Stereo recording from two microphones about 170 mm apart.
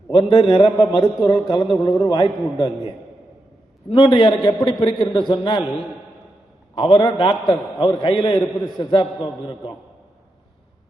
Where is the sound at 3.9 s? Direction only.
30° left (ahead or behind).